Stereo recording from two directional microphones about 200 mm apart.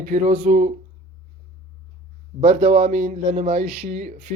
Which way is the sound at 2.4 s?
35° right (ahead or behind).